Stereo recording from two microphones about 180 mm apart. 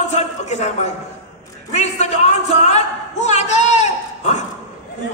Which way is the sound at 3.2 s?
40° left (ahead or behind).